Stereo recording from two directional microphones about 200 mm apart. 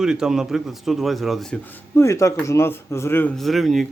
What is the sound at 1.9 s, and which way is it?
A man's voice, 15° left (ahead or behind).